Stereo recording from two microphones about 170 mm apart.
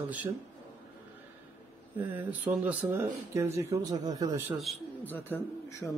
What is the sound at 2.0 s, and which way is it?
A man's voice, 10° right (ahead or behind).